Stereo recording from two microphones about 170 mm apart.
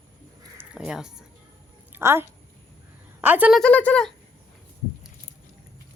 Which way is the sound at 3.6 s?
10° left (ahead or behind).